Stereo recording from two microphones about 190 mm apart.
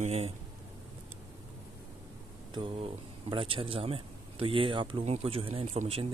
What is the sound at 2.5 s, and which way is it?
A man's voice, 25° right (ahead or behind).